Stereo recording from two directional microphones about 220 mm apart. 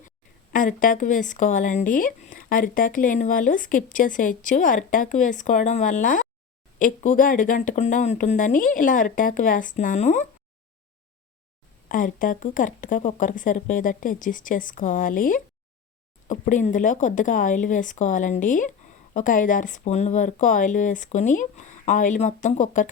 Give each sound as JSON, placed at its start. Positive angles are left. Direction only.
{"t": 0.5, "sound": "speech", "side_deg": 35}
{"t": 11.9, "sound": "speech", "side_deg": 40}